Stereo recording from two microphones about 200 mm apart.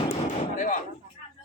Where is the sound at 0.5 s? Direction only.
40° left (ahead or behind).